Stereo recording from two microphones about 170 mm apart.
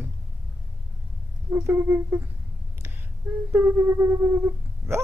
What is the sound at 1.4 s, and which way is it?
Speech, 15° right (ahead or behind).